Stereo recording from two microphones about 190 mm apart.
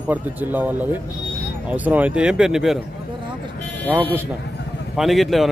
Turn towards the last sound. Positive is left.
turn(degrees=0)  # may be behind; listen again after turning